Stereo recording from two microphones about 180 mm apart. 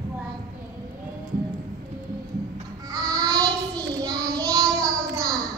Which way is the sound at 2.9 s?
20° right (ahead or behind).